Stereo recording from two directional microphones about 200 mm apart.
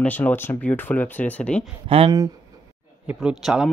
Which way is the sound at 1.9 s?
25° right (ahead or behind).